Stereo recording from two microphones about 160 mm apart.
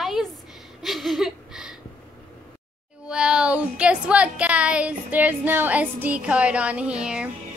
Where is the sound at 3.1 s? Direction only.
5° right (ahead or behind).